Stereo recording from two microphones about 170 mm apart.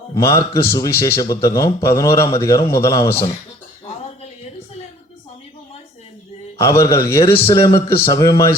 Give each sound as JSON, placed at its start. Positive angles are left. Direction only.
{"t": 0.1, "sound": "a man's voice", "side_deg": 15}
{"t": 6.6, "sound": "a man's voice", "side_deg": 20}